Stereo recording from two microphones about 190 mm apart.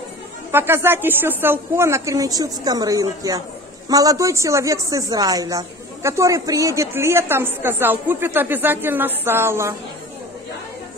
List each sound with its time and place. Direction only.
0.5 s speech: 10° right (ahead or behind)